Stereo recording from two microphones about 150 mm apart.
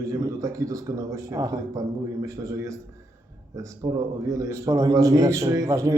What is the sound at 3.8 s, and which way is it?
A man's voice, 20° right (ahead or behind).